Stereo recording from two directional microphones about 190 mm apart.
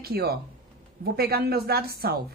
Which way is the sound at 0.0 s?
55° right (ahead or behind).